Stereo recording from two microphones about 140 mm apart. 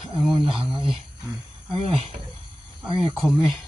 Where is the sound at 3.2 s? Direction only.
Centre (ahead or behind).